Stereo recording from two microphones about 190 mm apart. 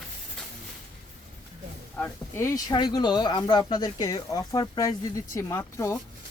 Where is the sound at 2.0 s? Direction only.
15° left (ahead or behind).